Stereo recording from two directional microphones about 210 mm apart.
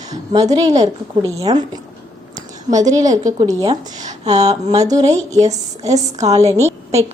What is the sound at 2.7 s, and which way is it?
Speech, 15° right (ahead or behind).